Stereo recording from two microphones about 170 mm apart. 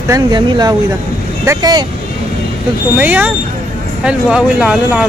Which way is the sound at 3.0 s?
10° right (ahead or behind).